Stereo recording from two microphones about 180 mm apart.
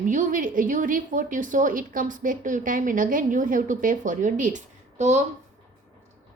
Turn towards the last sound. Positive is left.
turn(degrees=-40)  # may be behind; listen again after turning